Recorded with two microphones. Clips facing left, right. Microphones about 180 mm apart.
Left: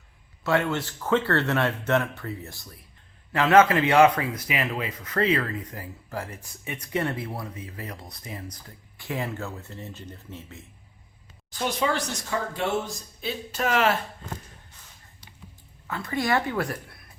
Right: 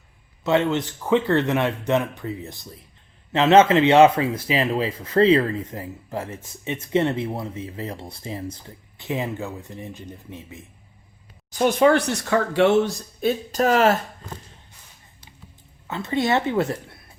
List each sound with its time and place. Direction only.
0.4 s speech: 20° right (ahead or behind)
11.5 s speech: 55° right (ahead or behind); by 13.0 s 75° right (ahead or behind)
13.2 s speech: 40° right (ahead or behind)
15.9 s speech: 25° right (ahead or behind)